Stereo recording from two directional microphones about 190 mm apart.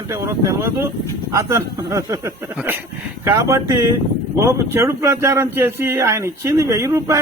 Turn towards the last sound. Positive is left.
turn(degrees=-15)  # may be behind; listen again after turning